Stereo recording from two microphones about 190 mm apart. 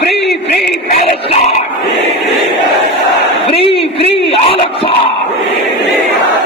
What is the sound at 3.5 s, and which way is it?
Battle cry, 30° left (ahead or behind).